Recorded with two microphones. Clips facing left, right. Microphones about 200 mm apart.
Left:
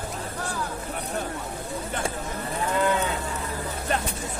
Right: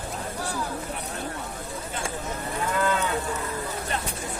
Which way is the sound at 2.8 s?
20° left (ahead or behind).